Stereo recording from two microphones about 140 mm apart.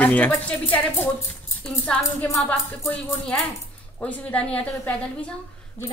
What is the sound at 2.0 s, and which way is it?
Speech, 20° left (ahead or behind).